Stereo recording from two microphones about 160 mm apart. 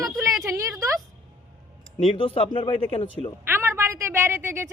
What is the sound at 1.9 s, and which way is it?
Speech, 35° left (ahead or behind).